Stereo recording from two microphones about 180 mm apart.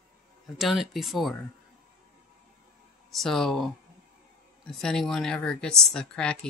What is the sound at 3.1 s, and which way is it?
Speech, centre (ahead or behind).